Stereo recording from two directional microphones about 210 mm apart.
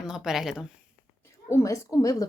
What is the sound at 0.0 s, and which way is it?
Speech, 5° right (ahead or behind).